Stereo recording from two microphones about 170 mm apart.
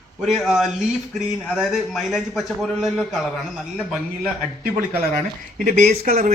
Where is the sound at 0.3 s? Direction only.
Centre (ahead or behind).